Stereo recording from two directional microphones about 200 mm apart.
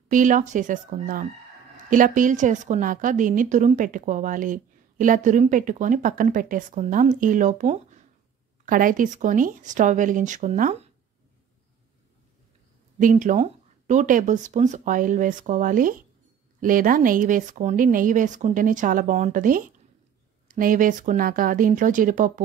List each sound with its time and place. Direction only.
0.1 s a woman's voice: 40° right (ahead or behind)
13.0 s a woman's voice: 40° right (ahead or behind)